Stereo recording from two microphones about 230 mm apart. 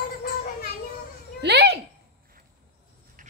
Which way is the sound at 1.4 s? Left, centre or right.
Right.